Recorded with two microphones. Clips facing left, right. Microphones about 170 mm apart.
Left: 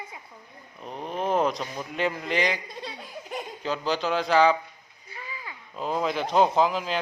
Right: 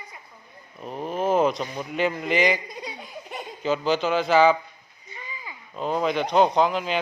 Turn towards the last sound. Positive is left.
turn(degrees=0)  # may be behind; listen again after turning